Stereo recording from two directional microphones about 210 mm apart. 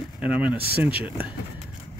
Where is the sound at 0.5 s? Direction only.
50° right (ahead or behind).